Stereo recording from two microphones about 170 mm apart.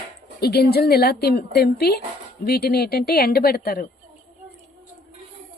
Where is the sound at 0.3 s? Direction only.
70° left (ahead or behind).